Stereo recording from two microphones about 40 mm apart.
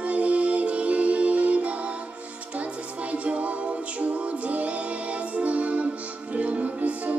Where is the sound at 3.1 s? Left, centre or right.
Right.